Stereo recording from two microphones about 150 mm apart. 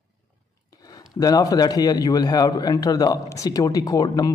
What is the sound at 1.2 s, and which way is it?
Speech, 25° left (ahead or behind).